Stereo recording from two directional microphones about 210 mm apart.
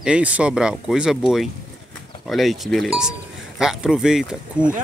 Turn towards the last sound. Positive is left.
turn(degrees=-5)  # may be behind; listen again after turning